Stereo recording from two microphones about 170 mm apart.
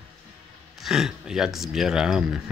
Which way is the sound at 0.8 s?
Centre (ahead or behind).